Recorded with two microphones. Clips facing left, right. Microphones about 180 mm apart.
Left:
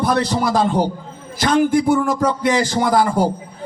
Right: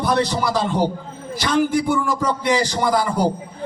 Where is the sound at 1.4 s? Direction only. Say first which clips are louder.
Left 3 dB; 50° left (ahead or behind).